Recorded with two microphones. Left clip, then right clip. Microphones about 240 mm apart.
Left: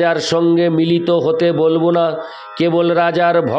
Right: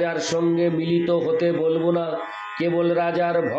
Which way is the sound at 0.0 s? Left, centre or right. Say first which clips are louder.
Left 8 dB; left.